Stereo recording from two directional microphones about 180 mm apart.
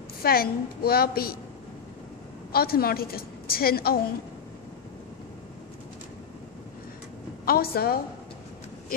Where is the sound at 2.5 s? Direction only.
55° left (ahead or behind).